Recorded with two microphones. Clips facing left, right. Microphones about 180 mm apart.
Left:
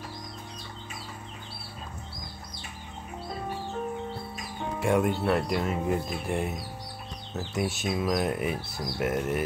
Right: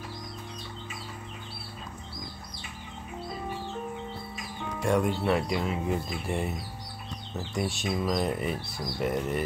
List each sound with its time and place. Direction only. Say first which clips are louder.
4.8 s speech: left 1 dB; 5° left (ahead or behind)